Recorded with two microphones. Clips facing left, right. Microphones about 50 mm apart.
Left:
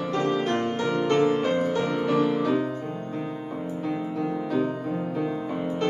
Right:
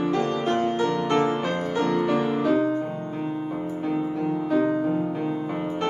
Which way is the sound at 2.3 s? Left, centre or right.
Centre.